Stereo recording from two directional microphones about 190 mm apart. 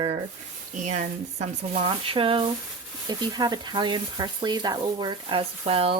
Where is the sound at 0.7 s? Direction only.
40° right (ahead or behind).